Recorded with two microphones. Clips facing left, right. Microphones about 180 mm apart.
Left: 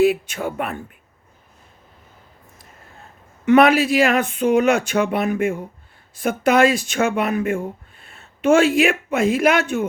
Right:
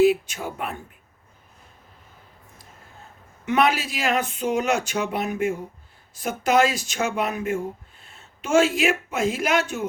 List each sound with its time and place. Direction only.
0.0 s speech: 60° left (ahead or behind)
3.4 s speech: 60° left (ahead or behind)